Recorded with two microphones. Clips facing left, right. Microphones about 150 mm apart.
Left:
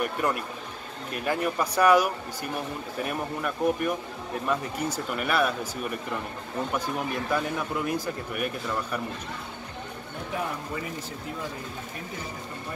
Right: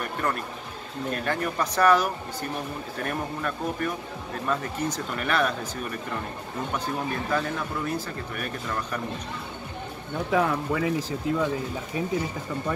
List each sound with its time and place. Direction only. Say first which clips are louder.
0.0 s speech: left 2 dB; 10° left (ahead or behind)
7.3 s speech: even; 10° left (ahead or behind)
10.3 s speech: right 8 dB; 90° right